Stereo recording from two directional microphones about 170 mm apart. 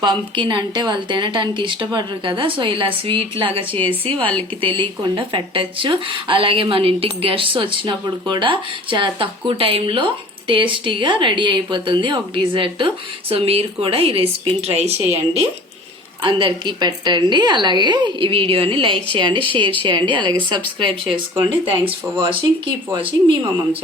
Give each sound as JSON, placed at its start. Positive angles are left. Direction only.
{"t": 0.0, "sound": "a woman's voice", "side_deg": -25}
{"t": 16.2, "sound": "a woman's voice", "side_deg": -30}